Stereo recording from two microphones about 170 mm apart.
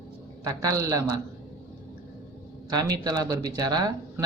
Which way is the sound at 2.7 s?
25° right (ahead or behind).